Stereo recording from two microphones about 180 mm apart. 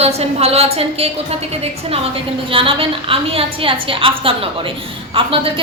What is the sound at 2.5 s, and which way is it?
A woman's voice, 30° right (ahead or behind).